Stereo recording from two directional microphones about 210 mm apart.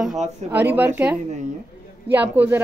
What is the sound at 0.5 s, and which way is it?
A woman's voice, 10° right (ahead or behind).